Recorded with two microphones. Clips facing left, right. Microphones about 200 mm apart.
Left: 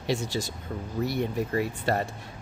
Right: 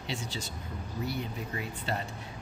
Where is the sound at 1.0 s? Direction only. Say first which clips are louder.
Left 6 dB; 80° left.